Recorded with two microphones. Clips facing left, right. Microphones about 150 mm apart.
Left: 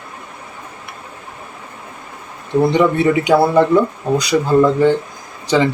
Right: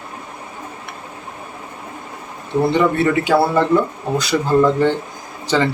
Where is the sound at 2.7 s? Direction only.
15° left (ahead or behind).